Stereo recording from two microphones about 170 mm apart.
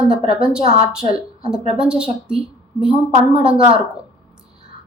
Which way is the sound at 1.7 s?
5° right (ahead or behind).